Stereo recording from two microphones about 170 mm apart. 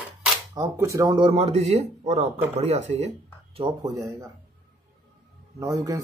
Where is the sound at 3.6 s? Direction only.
25° right (ahead or behind).